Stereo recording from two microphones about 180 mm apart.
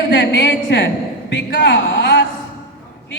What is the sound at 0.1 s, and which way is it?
A man's voice, 80° left.